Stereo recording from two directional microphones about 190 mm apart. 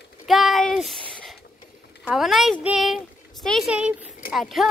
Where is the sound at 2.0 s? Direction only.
Centre (ahead or behind).